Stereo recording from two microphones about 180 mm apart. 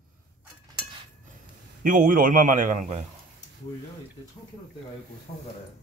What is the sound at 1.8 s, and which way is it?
A man's voice, 50° right (ahead or behind).